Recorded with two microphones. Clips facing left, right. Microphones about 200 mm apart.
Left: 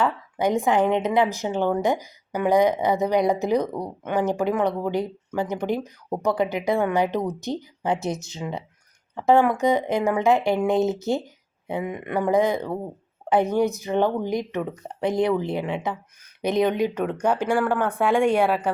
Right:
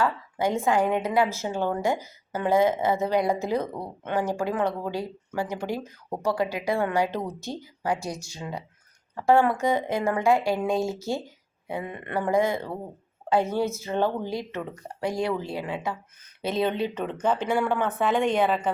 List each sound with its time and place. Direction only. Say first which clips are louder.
0.0 s a woman's voice: left 2 dB; 20° left (ahead or behind)